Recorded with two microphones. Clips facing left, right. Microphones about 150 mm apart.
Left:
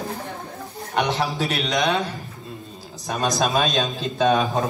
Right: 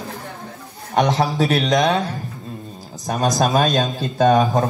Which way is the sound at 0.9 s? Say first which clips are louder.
Right 5 dB; 40° right (ahead or behind).